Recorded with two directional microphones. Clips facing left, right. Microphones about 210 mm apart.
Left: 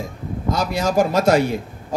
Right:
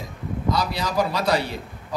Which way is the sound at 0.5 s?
45° left (ahead or behind).